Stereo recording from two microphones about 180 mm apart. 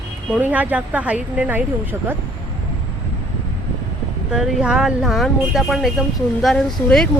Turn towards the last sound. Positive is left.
turn(degrees=5)  # may be behind; listen again after turning